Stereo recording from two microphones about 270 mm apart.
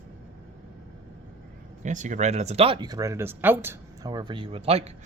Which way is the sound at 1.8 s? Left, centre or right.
Right.